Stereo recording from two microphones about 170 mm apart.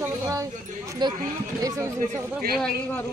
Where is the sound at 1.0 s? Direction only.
25° right (ahead or behind).